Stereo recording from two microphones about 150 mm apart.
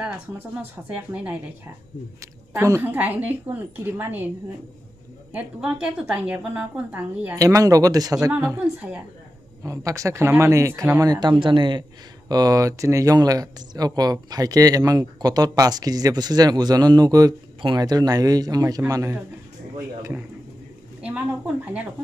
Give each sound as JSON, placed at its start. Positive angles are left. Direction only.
{"t": 0.6, "sound": "a woman's voice", "side_deg": -10}
{"t": 2.5, "sound": "a woman's voice", "side_deg": -15}
{"t": 5.3, "sound": "a woman's voice", "side_deg": -5}
{"t": 7.3, "sound": "a woman's voice", "side_deg": -25}
{"t": 9.6, "sound": "a woman's voice", "side_deg": -20}